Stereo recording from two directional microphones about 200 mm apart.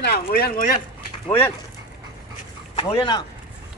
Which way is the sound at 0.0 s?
50° left (ahead or behind).